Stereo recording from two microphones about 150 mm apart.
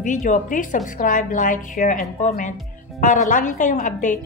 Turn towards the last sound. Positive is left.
turn(degrees=60)  # may be behind; listen again after turning